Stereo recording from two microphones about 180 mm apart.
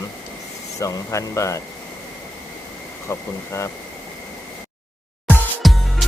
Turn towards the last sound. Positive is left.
turn(degrees=0)  # may be behind; listen again after turning